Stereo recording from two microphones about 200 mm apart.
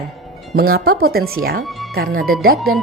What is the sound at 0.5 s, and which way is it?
Speech, 50° right (ahead or behind).